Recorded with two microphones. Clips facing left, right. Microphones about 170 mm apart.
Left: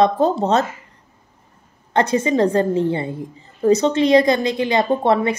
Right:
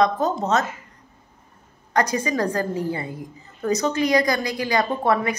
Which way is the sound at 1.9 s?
25° left (ahead or behind).